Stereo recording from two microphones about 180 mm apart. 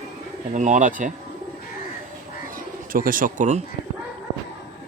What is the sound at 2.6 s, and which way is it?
Speech, 50° right (ahead or behind).